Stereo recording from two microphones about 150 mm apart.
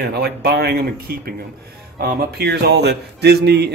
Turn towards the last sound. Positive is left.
turn(degrees=-90)